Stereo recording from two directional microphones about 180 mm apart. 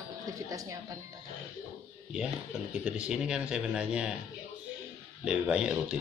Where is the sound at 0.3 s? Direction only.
20° right (ahead or behind).